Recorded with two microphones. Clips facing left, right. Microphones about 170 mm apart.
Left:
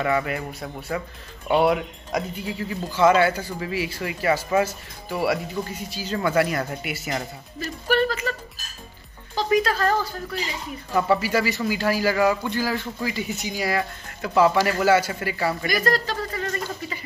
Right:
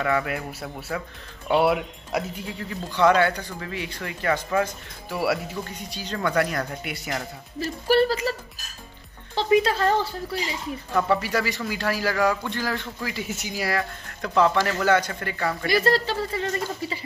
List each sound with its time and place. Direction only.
0.0 s speech: centre (ahead or behind)
7.6 s speech: 35° right (ahead or behind)
10.9 s speech: 5° left (ahead or behind)
15.6 s speech: 30° right (ahead or behind)